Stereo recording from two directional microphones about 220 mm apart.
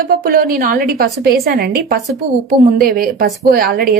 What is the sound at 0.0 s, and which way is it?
A woman's voice, 45° right (ahead or behind).